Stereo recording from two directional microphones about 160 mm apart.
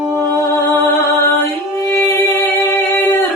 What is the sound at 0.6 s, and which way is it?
Music, 15° left (ahead or behind).